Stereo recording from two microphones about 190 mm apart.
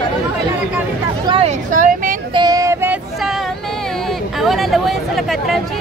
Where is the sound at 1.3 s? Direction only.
30° right (ahead or behind).